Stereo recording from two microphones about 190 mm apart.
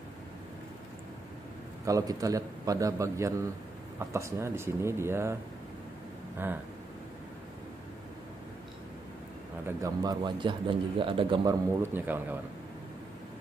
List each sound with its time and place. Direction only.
1.9 s a man's voice: 20° right (ahead or behind)
9.7 s a man's voice: 15° right (ahead or behind)
11.8 s a man's voice: 10° right (ahead or behind)